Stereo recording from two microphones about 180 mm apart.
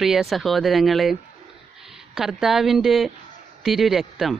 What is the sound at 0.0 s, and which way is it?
Speech, centre (ahead or behind).